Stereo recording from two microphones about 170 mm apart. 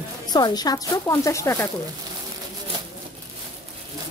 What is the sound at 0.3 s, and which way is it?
A woman's voice, 25° left (ahead or behind).